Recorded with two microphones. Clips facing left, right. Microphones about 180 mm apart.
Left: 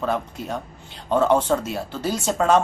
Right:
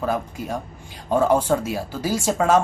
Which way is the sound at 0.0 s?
10° right (ahead or behind).